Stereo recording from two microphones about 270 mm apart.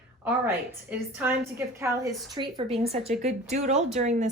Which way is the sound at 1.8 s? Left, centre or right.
Centre.